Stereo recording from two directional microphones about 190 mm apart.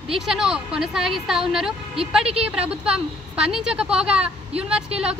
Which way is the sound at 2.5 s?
5° right (ahead or behind).